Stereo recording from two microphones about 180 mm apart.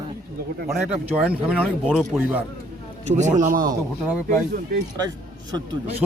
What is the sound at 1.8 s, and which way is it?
Speech, 5° left (ahead or behind).